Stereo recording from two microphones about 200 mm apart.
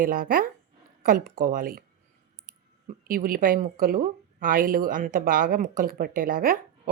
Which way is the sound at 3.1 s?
45° right (ahead or behind).